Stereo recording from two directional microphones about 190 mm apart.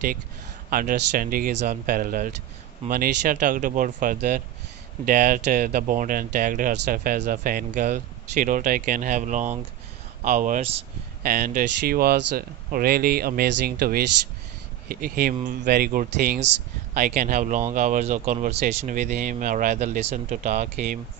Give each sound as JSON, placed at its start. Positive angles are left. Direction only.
{"t": 0.7, "sound": "speech", "side_deg": -50}
{"t": 11.2, "sound": "speech", "side_deg": -45}
{"t": 16.9, "sound": "speech", "side_deg": -45}